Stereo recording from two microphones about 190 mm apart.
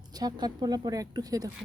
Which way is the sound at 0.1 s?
20° right (ahead or behind).